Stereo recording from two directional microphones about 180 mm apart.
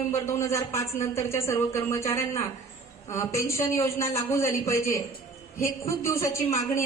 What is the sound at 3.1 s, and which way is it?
A woman's voice, 15° left (ahead or behind).